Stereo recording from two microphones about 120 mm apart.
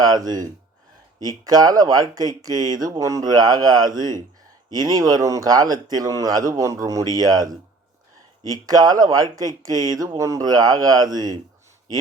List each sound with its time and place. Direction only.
0.0 s speech: 30° right (ahead or behind)
8.6 s speech: 35° right (ahead or behind)